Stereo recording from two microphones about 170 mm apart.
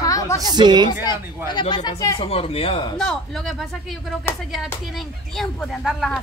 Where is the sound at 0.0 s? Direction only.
20° left (ahead or behind).